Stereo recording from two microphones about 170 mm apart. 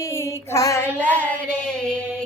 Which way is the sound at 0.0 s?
15° left (ahead or behind).